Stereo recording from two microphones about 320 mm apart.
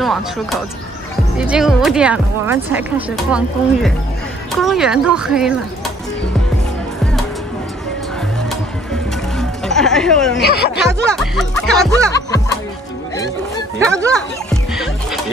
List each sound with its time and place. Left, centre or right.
0.0 s speech: centre
8.5 s music: centre
10.4 s speech: left
11.1 s speech: centre
12.1 s music: centre
14.1 s music: centre